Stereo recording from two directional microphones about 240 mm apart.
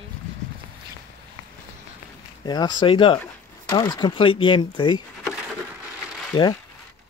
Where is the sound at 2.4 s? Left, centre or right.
Centre.